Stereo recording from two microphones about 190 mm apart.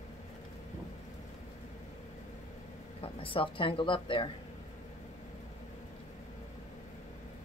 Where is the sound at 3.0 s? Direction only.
25° left (ahead or behind).